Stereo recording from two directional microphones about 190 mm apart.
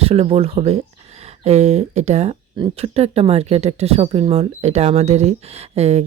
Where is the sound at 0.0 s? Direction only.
30° right (ahead or behind).